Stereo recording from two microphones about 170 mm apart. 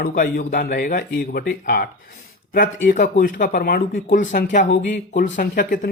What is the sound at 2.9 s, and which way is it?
Speech, 50° left (ahead or behind).